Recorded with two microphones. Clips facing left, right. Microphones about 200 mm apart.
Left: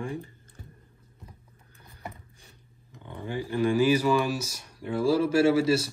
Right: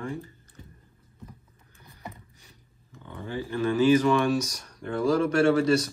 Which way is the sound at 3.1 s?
15° left (ahead or behind).